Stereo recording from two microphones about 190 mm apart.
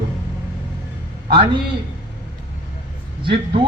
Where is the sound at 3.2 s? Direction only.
25° right (ahead or behind).